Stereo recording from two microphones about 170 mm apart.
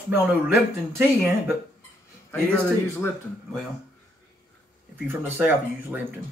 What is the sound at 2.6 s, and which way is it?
Speech, 15° left (ahead or behind).